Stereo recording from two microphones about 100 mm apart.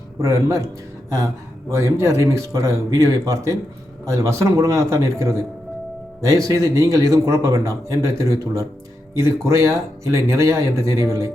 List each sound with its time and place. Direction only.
0.2 s a man's voice: 30° right (ahead or behind)
1.7 s a man's voice: 30° right (ahead or behind)